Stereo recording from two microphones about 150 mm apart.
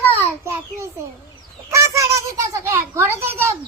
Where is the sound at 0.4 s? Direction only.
20° right (ahead or behind).